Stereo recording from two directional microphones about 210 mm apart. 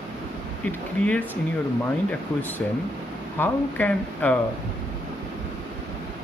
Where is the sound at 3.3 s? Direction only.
10° left (ahead or behind).